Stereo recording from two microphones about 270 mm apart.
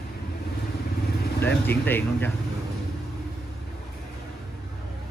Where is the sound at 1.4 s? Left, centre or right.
Centre.